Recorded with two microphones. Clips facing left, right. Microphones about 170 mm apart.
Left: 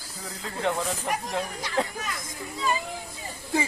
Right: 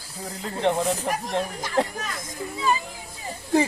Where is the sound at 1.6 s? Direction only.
45° right (ahead or behind).